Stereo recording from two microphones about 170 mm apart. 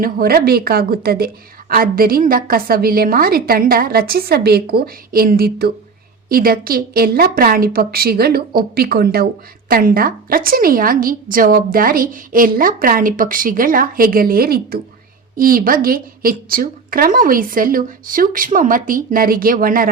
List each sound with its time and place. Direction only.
0.0 s a woman's voice: 60° right (ahead or behind)